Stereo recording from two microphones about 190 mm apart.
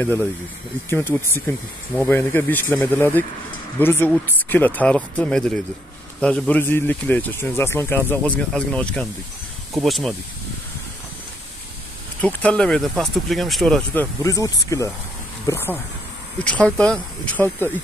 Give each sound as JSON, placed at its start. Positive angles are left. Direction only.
{"t": 0.8, "sound": "speech", "side_deg": 10}
{"t": 12.2, "sound": "speech", "side_deg": 5}
{"t": 14.2, "sound": "speech", "side_deg": 15}